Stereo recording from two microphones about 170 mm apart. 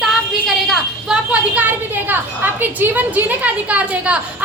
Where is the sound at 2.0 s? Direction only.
10° right (ahead or behind).